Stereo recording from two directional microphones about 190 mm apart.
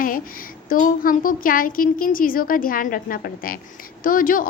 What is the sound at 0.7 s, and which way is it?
A woman's voice, 45° left (ahead or behind).